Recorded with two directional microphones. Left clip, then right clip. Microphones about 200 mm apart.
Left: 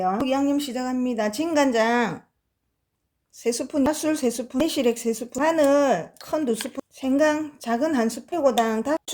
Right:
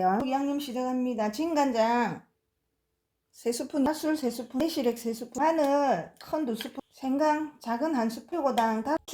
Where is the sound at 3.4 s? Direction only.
25° left (ahead or behind).